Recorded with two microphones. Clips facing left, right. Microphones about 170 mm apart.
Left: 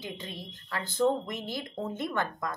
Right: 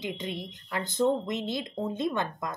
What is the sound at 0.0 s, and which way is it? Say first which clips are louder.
Speech: right 5 dB; 15° right (ahead or behind).